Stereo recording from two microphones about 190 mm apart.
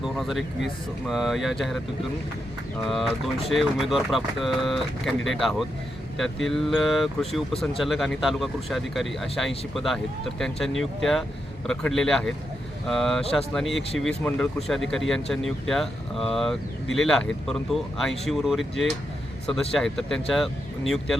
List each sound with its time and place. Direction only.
0.0 s speech: centre (ahead or behind)